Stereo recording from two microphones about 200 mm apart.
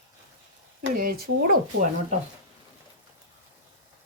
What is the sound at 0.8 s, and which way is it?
Speech, 45° right (ahead or behind).